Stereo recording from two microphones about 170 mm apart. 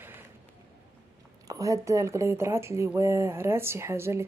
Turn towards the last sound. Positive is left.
turn(degrees=-15)  # may be behind; listen again after turning